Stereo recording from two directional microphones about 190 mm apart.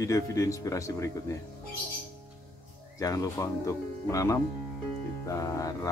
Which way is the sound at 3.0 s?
20° left (ahead or behind).